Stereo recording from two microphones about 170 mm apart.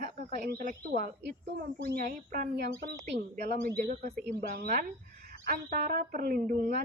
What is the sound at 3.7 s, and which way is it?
Speech, 65° right (ahead or behind).